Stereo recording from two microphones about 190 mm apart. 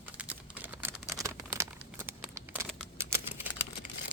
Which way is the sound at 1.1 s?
15° right (ahead or behind).